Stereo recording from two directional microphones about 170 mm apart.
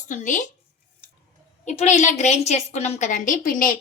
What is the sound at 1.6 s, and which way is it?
A woman's voice, 40° left (ahead or behind).